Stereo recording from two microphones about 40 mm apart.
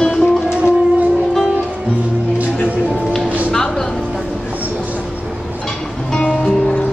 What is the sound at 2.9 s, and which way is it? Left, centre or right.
Music, centre.